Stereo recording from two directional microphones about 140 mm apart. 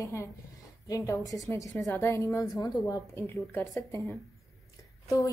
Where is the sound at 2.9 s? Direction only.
15° left (ahead or behind).